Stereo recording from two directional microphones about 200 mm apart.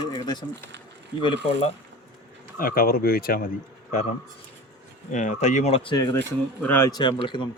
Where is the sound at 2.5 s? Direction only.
45° left (ahead or behind).